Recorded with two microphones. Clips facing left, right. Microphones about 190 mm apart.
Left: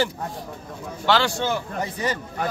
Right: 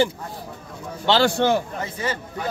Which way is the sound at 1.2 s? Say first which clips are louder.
Right 6 dB; 60° right (ahead or behind).